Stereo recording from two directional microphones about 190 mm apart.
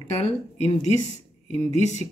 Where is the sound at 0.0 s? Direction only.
35° left (ahead or behind).